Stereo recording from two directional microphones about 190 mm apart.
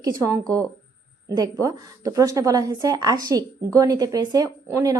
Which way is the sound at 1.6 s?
15° right (ahead or behind).